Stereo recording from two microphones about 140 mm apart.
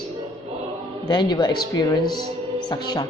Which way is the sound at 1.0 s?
30° left (ahead or behind).